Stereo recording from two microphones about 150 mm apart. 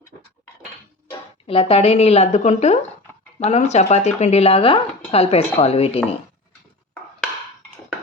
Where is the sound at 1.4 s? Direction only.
40° left (ahead or behind).